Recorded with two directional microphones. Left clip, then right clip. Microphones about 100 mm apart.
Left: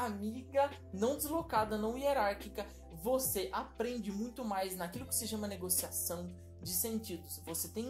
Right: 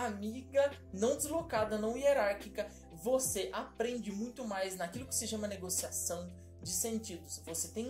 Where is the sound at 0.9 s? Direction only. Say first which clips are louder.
Left 1 dB; 45° left (ahead or behind).